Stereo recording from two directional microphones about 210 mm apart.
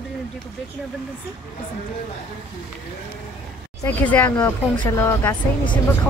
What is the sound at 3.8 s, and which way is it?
Speech, 10° left (ahead or behind).